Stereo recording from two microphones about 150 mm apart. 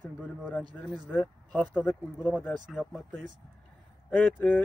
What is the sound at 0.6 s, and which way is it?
Speech, 30° right (ahead or behind).